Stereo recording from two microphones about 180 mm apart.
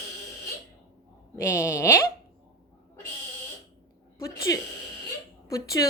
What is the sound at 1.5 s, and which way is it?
Speech, 15° left (ahead or behind).